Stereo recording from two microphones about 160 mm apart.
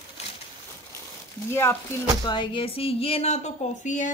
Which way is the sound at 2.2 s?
30° left (ahead or behind).